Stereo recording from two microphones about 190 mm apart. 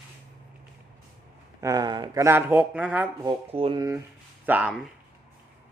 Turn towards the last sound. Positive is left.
turn(degrees=-10)  # may be behind; listen again after turning